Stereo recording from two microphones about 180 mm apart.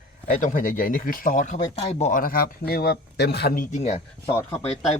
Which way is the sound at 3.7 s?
40° left (ahead or behind).